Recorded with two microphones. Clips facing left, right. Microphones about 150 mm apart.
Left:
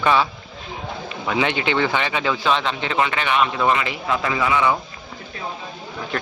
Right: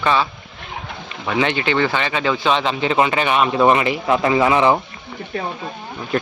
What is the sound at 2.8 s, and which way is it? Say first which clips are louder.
A man's voice: right 6 dB; 25° right (ahead or behind).